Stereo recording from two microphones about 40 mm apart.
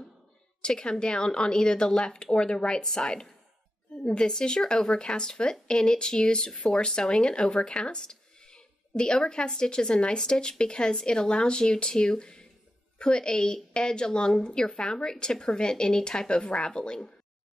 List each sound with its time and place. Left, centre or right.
0.6 s a woman's voice: left